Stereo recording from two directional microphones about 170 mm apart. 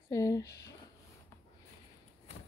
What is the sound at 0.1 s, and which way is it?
Speech, 20° left (ahead or behind).